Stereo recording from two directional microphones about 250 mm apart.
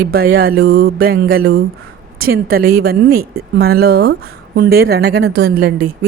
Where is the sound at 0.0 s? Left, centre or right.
Right.